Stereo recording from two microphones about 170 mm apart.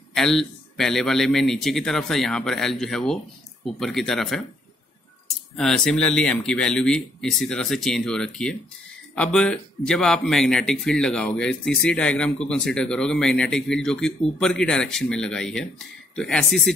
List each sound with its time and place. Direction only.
0.1 s speech: centre (ahead or behind)
5.6 s speech: 5° left (ahead or behind)